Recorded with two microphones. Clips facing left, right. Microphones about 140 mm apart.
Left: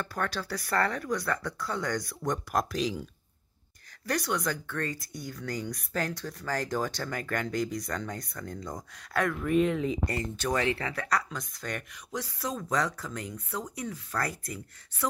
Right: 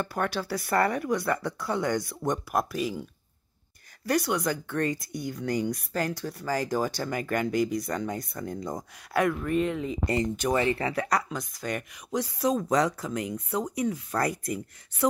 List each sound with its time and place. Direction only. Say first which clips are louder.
0.0 s speech: right 4 dB; 10° right (ahead or behind)
4.0 s speech: right 4 dB; 10° right (ahead or behind)
9.4 s speech: left 1 dB; centre (ahead or behind)
10.0 s speech: right 5 dB; 15° right (ahead or behind)